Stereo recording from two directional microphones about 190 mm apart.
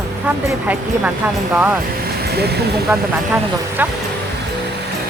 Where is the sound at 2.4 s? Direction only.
60° right (ahead or behind).